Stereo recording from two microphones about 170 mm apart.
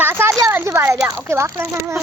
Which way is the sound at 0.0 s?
15° right (ahead or behind).